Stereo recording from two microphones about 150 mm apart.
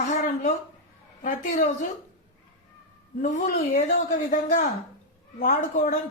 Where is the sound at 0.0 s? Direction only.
55° left (ahead or behind).